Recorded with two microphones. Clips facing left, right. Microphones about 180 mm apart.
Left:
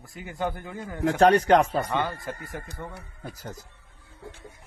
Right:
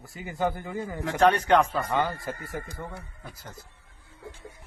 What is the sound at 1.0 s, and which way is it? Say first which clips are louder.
Speech: left 4 dB; 40° left (ahead or behind).